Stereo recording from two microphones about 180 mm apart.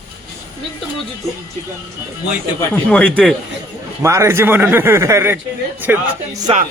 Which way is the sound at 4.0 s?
15° right (ahead or behind).